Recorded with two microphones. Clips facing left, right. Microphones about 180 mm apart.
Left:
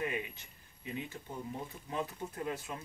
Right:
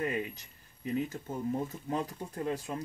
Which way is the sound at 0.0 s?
40° right (ahead or behind).